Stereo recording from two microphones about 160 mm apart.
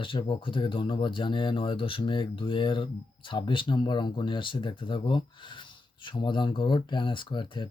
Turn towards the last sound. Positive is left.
turn(degrees=30)  # may be behind; listen again after turning